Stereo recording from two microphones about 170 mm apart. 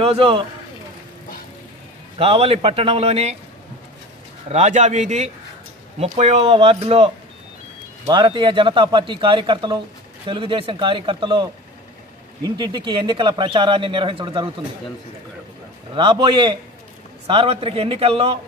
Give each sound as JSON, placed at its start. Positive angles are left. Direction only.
{"t": 0.0, "sound": "a man's voice", "side_deg": -35}
{"t": 2.1, "sound": "a man's voice", "side_deg": -35}
{"t": 4.5, "sound": "a man's voice", "side_deg": -40}
{"t": 8.1, "sound": "speech", "side_deg": -25}
{"t": 12.4, "sound": "speech", "side_deg": -25}
{"t": 15.9, "sound": "a man's voice", "side_deg": -30}